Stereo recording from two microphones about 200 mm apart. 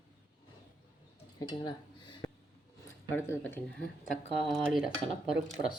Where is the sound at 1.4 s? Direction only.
20° left (ahead or behind).